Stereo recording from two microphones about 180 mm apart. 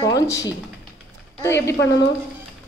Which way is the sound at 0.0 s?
20° left (ahead or behind).